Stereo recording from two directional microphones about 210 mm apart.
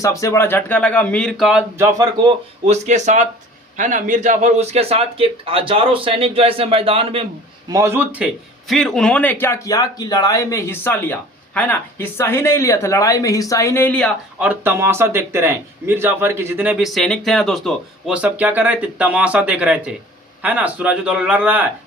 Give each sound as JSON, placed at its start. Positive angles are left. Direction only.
{"t": 0.0, "sound": "speech", "side_deg": 15}
{"t": 2.6, "sound": "a man's voice", "side_deg": -35}
{"t": 7.7, "sound": "speech", "side_deg": -15}
{"t": 14.3, "sound": "speech", "side_deg": -10}